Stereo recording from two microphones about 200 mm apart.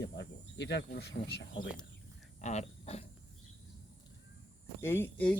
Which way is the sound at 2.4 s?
35° left (ahead or behind).